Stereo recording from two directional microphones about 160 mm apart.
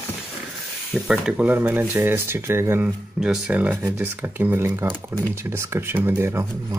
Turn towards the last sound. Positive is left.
turn(degrees=-15)  # may be behind; listen again after turning